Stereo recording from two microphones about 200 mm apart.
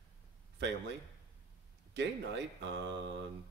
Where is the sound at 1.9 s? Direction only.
60° right (ahead or behind).